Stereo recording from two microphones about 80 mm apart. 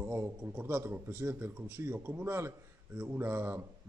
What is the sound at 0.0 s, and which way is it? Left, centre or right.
A man's voice, right.